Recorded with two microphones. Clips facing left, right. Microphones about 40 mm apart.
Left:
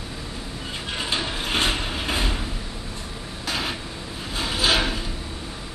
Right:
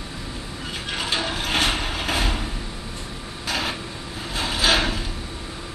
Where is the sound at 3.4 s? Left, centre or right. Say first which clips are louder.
Right 2 dB; right.